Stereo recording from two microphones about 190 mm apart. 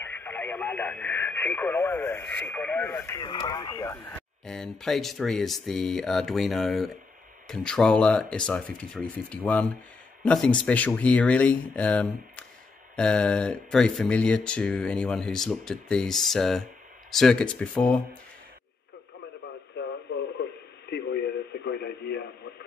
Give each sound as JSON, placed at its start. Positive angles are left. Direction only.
{"t": 0.0, "sound": "speech", "side_deg": 10}
{"t": 4.5, "sound": "speech", "side_deg": 0}
{"t": 20.9, "sound": "radio", "side_deg": 60}